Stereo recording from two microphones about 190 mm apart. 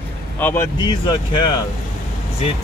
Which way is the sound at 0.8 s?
25° left (ahead or behind).